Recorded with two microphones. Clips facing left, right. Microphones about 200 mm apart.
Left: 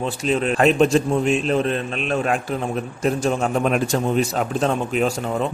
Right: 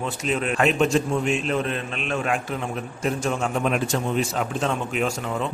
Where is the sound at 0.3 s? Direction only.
35° left (ahead or behind).